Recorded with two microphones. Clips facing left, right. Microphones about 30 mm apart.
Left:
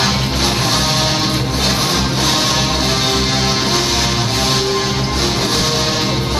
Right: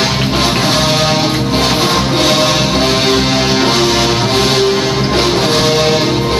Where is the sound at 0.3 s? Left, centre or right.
Right.